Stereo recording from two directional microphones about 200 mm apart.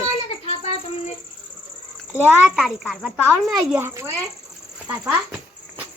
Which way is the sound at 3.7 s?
10° right (ahead or behind).